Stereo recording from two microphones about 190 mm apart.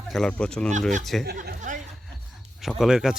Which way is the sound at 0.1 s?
5° left (ahead or behind).